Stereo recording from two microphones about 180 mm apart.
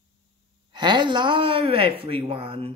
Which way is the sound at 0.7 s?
25° right (ahead or behind).